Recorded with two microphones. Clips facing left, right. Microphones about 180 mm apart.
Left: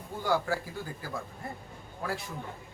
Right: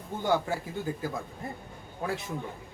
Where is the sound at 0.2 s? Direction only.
20° right (ahead or behind).